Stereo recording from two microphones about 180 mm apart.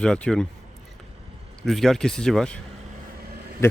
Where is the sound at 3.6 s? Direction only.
15° left (ahead or behind).